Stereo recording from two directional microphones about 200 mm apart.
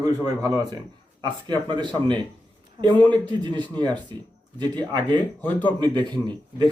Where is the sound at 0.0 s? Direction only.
20° right (ahead or behind).